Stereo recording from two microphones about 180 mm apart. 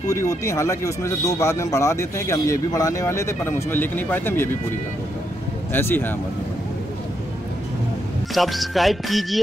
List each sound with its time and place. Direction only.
0.1 s speech: 15° left (ahead or behind)
5.7 s speech: 10° left (ahead or behind)
8.4 s speech: centre (ahead or behind)